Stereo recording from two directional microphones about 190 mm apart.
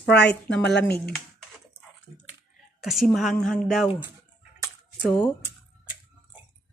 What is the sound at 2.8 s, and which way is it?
Speech, centre (ahead or behind).